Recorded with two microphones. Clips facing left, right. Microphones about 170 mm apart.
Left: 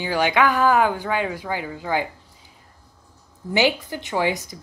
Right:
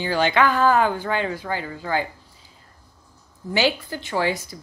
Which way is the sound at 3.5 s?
20° left (ahead or behind).